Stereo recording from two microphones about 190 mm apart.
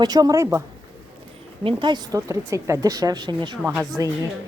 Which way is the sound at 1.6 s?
25° right (ahead or behind).